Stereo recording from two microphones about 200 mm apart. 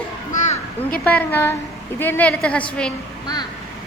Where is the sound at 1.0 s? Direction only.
10° left (ahead or behind).